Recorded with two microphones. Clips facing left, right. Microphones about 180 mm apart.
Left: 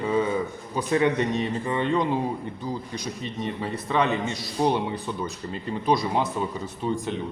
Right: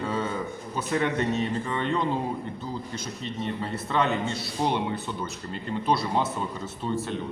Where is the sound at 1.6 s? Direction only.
15° left (ahead or behind).